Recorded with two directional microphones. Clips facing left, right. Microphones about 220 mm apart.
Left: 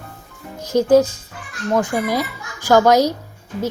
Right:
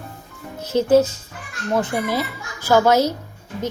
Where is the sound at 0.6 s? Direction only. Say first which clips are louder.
Left 2 dB; 10° left (ahead or behind).